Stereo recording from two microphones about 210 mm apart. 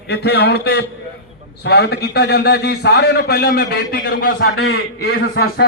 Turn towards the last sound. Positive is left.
turn(degrees=50)  # may be behind; listen again after turning